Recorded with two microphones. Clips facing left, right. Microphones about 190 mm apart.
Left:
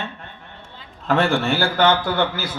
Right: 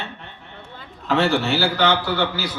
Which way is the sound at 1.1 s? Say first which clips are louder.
Even; 50° left (ahead or behind).